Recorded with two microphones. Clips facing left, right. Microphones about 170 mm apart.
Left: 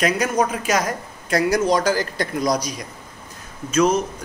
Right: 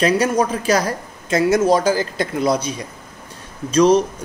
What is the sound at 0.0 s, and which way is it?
Speech, 30° right (ahead or behind).